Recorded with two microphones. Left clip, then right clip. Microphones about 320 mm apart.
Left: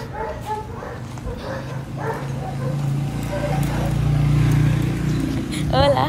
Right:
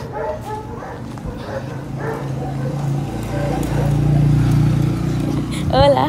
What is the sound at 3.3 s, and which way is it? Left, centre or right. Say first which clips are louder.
Vehicle: right 3 dB; right.